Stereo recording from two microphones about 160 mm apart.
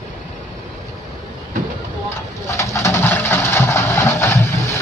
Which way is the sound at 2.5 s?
20° left (ahead or behind).